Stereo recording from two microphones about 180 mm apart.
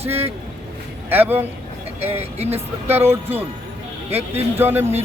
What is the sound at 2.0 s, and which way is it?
Speech, 35° right (ahead or behind).